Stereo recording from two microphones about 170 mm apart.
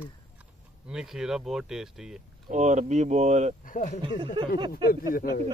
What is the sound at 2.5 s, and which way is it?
Speech, 45° right (ahead or behind).